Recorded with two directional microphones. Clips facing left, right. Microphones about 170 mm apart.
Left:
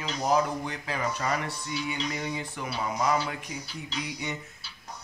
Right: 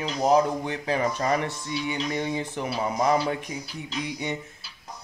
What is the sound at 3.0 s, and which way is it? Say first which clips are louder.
Speech: right 4 dB; 30° right (ahead or behind).